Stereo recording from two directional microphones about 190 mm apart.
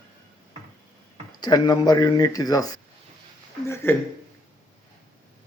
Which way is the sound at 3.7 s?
10° left (ahead or behind).